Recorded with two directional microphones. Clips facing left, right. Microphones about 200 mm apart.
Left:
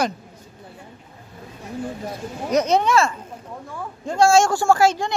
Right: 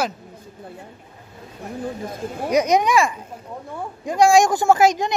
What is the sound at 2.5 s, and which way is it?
Speech, 15° right (ahead or behind).